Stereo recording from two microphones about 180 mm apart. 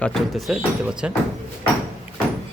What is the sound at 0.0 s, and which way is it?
Speech, centre (ahead or behind).